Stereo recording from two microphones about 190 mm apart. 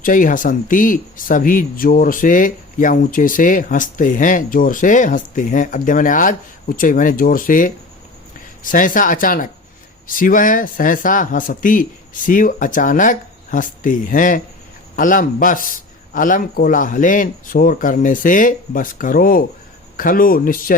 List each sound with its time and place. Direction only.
0.0 s speech: 45° left (ahead or behind)